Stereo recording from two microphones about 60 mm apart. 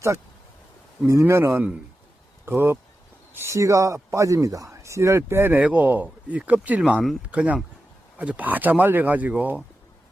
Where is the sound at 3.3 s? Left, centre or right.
Right.